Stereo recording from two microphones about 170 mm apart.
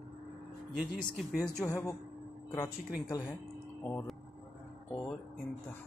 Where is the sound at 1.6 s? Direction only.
20° left (ahead or behind).